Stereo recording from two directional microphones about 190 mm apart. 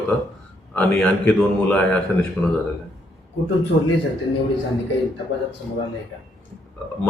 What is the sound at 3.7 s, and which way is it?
Speech, 30° left (ahead or behind).